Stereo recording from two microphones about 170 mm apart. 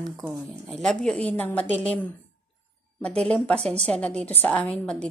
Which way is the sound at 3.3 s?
5° left (ahead or behind).